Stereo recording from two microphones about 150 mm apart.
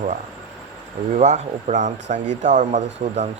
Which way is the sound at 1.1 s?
50° right (ahead or behind).